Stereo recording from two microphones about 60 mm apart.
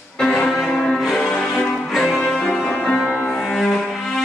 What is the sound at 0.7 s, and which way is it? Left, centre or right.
Change ringing, centre.